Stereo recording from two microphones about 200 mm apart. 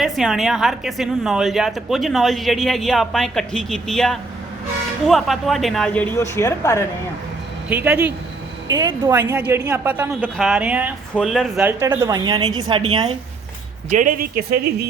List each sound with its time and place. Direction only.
0.0 s a woman's voice: centre (ahead or behind)
7.7 s a woman's voice: 10° right (ahead or behind)
8.6 s a woman's voice: 20° right (ahead or behind); by 11.7 s centre (ahead or behind)
11.8 s a woman's voice: 15° right (ahead or behind)
13.9 s speech: 40° right (ahead or behind)